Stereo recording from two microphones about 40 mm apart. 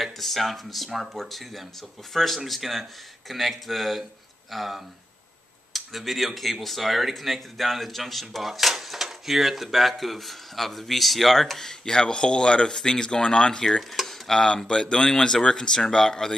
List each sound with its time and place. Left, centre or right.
0.0 s speech: centre
2.1 s speech: centre
13.7 s cutlery: centre
14.7 s speech: centre